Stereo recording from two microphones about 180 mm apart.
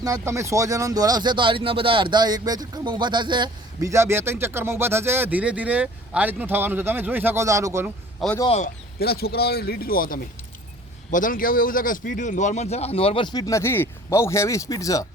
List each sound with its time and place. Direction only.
0.0 s speech: 15° right (ahead or behind)
8.4 s a man's voice: 40° left (ahead or behind)
9.0 s a man's voice: 60° left (ahead or behind); by 15.0 s 20° left (ahead or behind)